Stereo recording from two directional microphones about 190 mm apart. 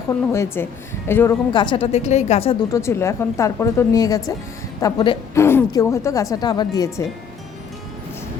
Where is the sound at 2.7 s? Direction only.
15° left (ahead or behind).